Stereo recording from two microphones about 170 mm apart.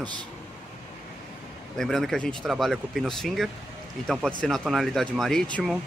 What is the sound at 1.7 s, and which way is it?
Speech, centre (ahead or behind).